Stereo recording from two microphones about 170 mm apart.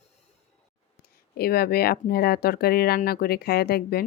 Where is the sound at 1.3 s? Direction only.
65° left (ahead or behind).